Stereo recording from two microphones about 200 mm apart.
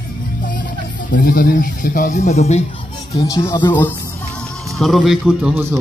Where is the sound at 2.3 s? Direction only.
35° left (ahead or behind).